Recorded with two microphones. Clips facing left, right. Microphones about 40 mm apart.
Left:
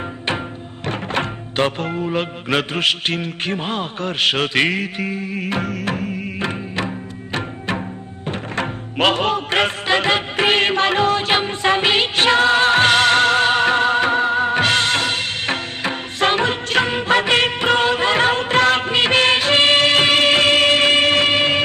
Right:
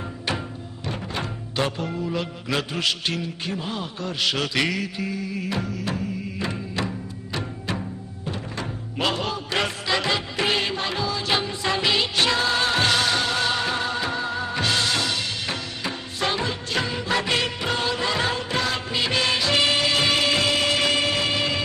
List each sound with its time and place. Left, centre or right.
0.8 s music: left